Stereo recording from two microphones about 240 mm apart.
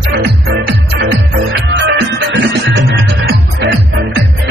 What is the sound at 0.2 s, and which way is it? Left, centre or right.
Music, right.